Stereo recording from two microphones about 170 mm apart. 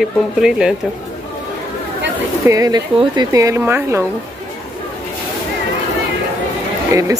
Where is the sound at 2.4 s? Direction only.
20° right (ahead or behind).